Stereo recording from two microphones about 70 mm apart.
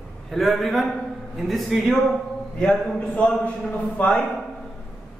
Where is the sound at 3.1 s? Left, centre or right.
Centre.